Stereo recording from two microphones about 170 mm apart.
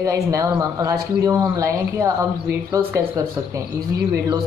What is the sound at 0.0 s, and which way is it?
Speech, 20° right (ahead or behind).